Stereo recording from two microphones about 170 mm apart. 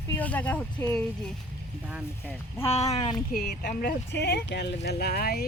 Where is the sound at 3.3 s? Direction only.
60° left (ahead or behind).